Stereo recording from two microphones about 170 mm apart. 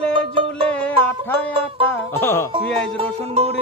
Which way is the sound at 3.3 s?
35° right (ahead or behind).